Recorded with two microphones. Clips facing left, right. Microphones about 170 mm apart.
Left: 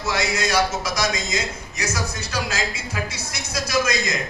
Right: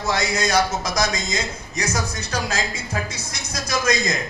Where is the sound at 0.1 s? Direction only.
40° right (ahead or behind).